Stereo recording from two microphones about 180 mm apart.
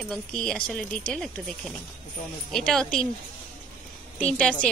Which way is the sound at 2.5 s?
Centre (ahead or behind).